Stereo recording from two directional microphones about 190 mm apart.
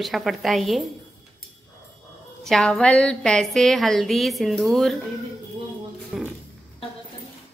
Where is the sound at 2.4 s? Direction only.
Centre (ahead or behind).